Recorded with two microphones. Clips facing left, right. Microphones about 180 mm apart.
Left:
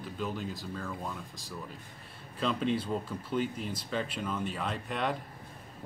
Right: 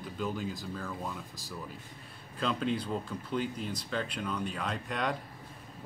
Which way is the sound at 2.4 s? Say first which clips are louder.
Left 1 dB; centre (ahead or behind).